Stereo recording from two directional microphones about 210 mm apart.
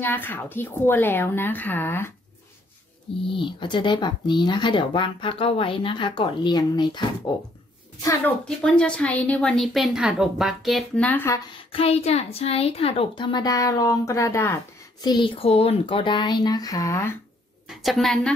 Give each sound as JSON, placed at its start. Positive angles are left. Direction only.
{"t": 0.0, "sound": "a woman's voice", "side_deg": 10}
{"t": 3.3, "sound": "a child's voice", "side_deg": 25}
{"t": 8.5, "sound": "a woman's voice", "side_deg": 5}
{"t": 11.7, "sound": "a child's voice", "side_deg": 30}
{"t": 17.6, "sound": "a woman's voice", "side_deg": 0}